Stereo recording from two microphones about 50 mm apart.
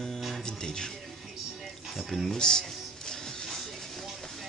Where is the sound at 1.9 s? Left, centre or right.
Centre.